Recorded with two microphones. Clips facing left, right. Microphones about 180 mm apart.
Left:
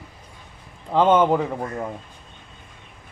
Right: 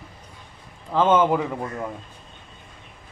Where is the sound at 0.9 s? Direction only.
15° left (ahead or behind).